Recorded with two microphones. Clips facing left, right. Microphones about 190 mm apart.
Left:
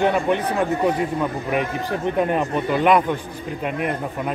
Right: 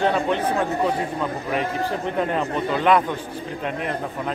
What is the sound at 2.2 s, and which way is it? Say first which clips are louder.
Speech: left 2 dB; 15° left (ahead or behind).